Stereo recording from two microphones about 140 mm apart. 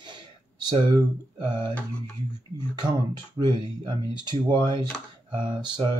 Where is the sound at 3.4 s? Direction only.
35° right (ahead or behind).